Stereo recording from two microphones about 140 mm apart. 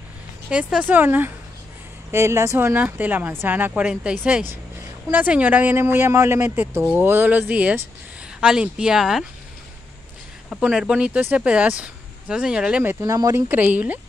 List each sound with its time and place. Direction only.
0.5 s speech: 5° right (ahead or behind)
10.5 s speech: 5° right (ahead or behind)
13.0 s speech: 25° right (ahead or behind)